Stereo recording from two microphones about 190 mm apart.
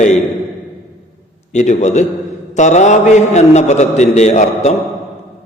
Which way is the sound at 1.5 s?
40° left (ahead or behind).